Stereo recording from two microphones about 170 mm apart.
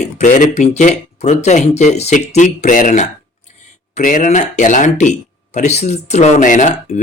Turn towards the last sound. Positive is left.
turn(degrees=50)  # may be behind; listen again after turning